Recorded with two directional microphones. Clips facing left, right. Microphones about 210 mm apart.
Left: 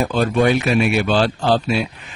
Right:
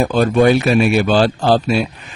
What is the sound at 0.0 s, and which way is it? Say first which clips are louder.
Speech: right 4 dB; 45° right (ahead or behind).